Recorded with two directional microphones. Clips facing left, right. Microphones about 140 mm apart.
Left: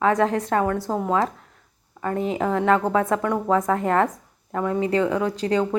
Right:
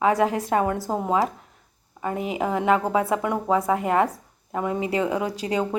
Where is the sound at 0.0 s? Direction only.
10° right (ahead or behind).